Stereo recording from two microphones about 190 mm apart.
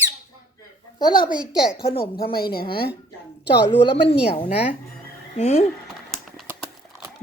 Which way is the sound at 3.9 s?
30° left (ahead or behind).